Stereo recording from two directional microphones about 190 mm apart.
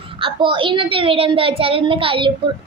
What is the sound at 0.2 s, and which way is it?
A woman's voice, 25° right (ahead or behind).